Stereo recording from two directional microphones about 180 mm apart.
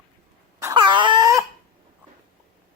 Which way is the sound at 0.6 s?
20° right (ahead or behind).